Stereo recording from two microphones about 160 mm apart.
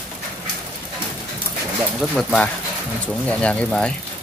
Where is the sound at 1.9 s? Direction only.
5° left (ahead or behind).